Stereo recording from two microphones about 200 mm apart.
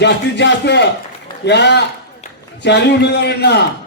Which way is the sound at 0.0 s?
60° left (ahead or behind).